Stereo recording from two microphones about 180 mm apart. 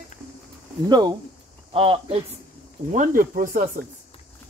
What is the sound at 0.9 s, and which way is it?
Speech, 25° right (ahead or behind).